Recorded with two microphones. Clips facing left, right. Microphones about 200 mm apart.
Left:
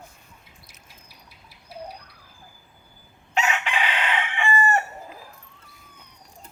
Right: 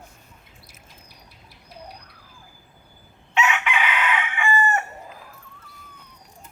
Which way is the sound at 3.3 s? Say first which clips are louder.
Right 2 dB; 35° left (ahead or behind).